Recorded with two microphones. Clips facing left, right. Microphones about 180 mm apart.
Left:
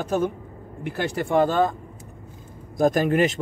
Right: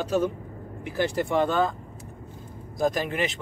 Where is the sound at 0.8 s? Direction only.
60° left (ahead or behind).